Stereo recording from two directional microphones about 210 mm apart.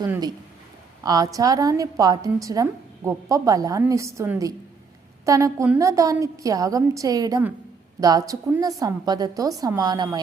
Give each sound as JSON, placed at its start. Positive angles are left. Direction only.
{"t": 0.0, "sound": "a woman's voice", "side_deg": -20}